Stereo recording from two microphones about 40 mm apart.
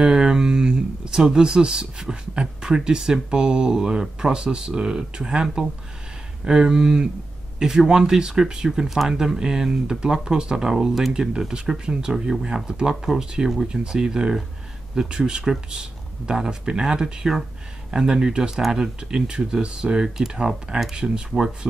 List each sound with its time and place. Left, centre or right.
0.0 s speech: centre
18.9 s speech: right